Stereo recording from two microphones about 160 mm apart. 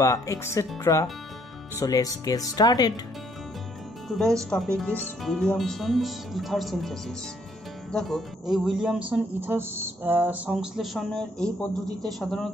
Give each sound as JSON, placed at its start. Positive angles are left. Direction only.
{"t": 0.0, "sound": "speech", "side_deg": 20}
{"t": 4.1, "sound": "speech", "side_deg": 5}